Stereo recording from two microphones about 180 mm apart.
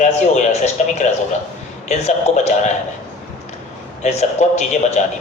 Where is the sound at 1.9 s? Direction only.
40° left (ahead or behind).